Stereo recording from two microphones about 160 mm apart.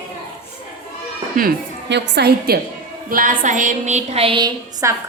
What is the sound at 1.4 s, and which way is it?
A woman's voice, 80° right.